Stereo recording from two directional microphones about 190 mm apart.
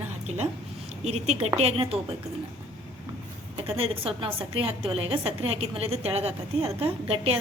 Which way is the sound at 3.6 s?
30° right (ahead or behind).